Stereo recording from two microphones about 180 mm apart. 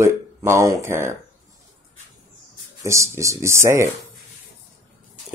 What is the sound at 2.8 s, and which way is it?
Speech, 15° right (ahead or behind).